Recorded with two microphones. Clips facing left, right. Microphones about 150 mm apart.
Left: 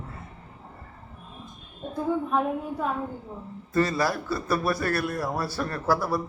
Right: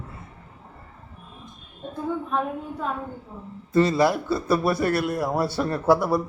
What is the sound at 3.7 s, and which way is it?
A man's voice, 25° right (ahead or behind).